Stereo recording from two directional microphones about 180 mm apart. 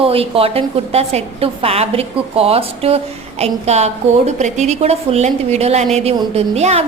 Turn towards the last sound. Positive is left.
turn(degrees=-35)  # may be behind; listen again after turning